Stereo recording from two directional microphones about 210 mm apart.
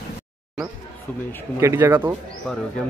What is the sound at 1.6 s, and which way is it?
Speech, 15° right (ahead or behind).